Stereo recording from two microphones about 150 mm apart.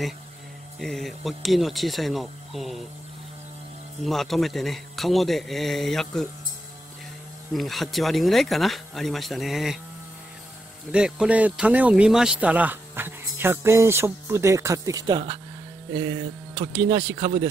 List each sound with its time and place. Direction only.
0.7 s a man's voice: centre (ahead or behind)
4.0 s a man's voice: centre (ahead or behind)
7.5 s a man's voice: centre (ahead or behind)
10.9 s speech: 5° right (ahead or behind); by 15.3 s 30° right (ahead or behind)
15.9 s music: 30° right (ahead or behind)
16.9 s speech: 30° right (ahead or behind)